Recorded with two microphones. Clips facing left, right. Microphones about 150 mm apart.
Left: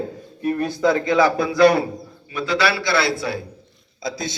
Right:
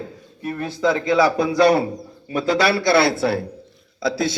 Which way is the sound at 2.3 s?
45° right (ahead or behind).